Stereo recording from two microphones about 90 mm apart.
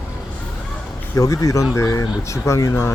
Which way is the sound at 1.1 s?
40° left (ahead or behind).